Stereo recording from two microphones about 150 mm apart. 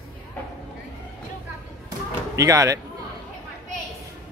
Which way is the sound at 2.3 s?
20° right (ahead or behind).